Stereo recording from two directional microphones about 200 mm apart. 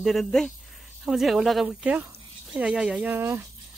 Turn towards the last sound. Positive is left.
turn(degrees=-10)  # may be behind; listen again after turning